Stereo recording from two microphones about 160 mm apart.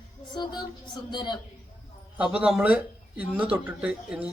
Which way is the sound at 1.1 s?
30° left (ahead or behind).